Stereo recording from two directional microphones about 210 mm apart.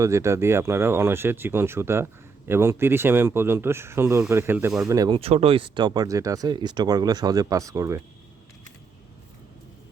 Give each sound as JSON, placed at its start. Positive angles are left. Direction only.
{"t": 0.0, "sound": "speech", "side_deg": -15}
{"t": 4.9, "sound": "speech", "side_deg": -20}